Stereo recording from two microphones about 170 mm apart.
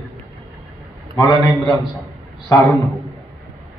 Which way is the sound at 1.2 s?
20° left (ahead or behind).